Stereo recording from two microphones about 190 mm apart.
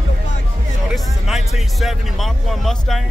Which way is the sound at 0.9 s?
Centre (ahead or behind).